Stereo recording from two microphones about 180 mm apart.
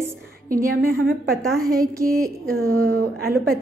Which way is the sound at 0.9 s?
60° right (ahead or behind).